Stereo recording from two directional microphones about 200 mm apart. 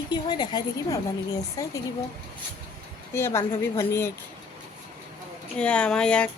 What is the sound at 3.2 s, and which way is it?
Speech, 15° left (ahead or behind).